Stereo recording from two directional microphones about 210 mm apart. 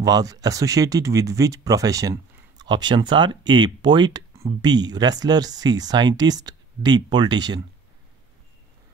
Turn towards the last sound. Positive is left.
turn(degrees=-20)  # may be behind; listen again after turning